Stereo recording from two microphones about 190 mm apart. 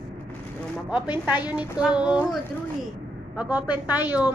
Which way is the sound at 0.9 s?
10° right (ahead or behind).